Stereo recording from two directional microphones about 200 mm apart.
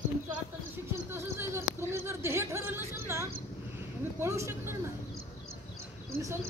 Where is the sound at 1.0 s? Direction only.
10° right (ahead or behind).